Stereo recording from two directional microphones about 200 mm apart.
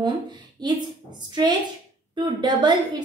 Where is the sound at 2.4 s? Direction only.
20° right (ahead or behind).